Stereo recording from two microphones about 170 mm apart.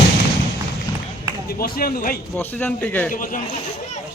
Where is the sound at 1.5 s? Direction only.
60° left (ahead or behind).